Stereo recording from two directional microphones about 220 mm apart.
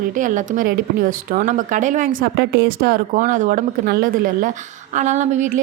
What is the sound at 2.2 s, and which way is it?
Speech, 50° right (ahead or behind).